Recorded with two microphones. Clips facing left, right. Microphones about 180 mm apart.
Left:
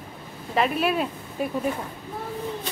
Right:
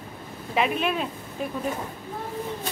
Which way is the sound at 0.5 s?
Centre (ahead or behind).